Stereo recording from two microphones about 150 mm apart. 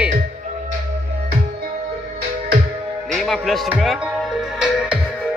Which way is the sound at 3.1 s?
Centre (ahead or behind).